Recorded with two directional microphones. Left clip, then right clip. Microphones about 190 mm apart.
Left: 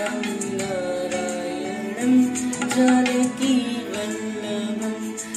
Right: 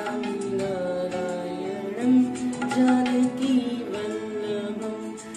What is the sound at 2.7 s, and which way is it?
Music, 25° left (ahead or behind).